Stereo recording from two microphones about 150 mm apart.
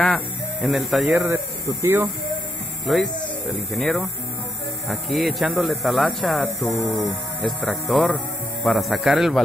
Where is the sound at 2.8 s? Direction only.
Centre (ahead or behind).